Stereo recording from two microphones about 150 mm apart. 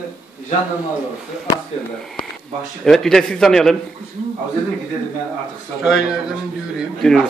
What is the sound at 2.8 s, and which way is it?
Speech, 5° left (ahead or behind).